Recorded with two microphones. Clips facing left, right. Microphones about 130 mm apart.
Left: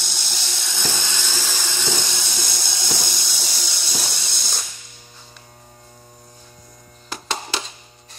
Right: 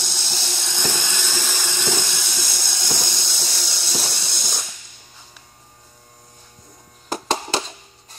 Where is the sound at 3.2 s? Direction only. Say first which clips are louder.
Right 1 dB; centre (ahead or behind).